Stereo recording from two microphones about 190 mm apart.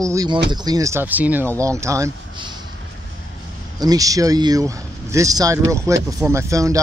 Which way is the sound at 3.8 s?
20° right (ahead or behind).